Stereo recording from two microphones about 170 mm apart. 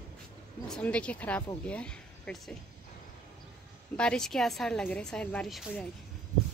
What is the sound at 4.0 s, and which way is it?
Speech, 5° left (ahead or behind).